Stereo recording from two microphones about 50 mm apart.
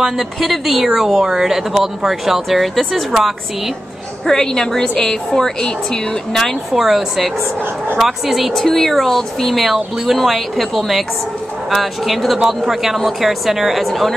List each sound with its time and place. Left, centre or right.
0.0 s speech: centre
4.3 s a woman's voice: centre
6.7 s speech: centre
8.6 s speech: centre